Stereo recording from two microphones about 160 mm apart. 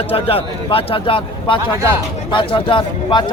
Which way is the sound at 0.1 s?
35° left (ahead or behind).